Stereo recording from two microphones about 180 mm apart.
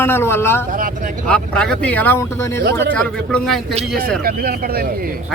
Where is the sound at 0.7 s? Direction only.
45° right (ahead or behind).